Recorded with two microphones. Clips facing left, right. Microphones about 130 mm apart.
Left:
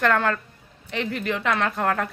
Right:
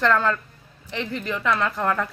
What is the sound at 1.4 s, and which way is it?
Speech, 75° left (ahead or behind).